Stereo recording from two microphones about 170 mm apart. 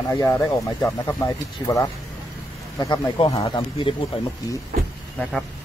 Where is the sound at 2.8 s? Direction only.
30° left (ahead or behind).